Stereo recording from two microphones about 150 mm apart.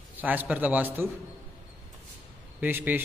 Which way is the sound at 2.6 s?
15° right (ahead or behind).